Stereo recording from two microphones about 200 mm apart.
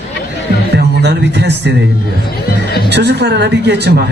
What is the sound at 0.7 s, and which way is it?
Speech, 55° right (ahead or behind).